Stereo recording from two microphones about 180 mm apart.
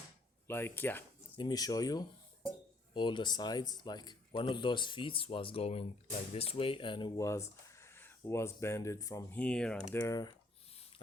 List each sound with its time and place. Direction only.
0.4 s speech: 10° left (ahead or behind)
1.4 s speech: 20° left (ahead or behind)
9.4 s speech: 5° left (ahead or behind)
10.0 s speech: 20° left (ahead or behind)